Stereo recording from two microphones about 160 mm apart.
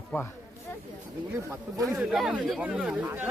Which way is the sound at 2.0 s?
Centre (ahead or behind).